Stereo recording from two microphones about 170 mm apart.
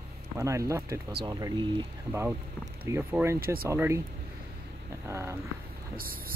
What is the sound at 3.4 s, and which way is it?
Speech, 60° right (ahead or behind).